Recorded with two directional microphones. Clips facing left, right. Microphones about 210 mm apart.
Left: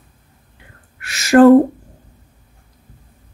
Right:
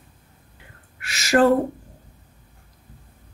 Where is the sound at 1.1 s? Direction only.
50° left (ahead or behind).